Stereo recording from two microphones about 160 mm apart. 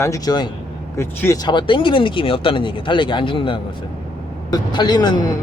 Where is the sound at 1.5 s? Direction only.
30° left (ahead or behind).